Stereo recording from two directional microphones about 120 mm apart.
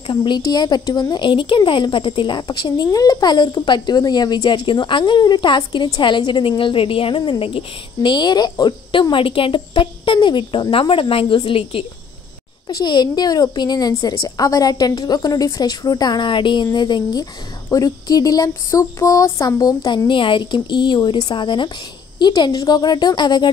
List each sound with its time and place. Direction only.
0.1 s speech: 40° left (ahead or behind)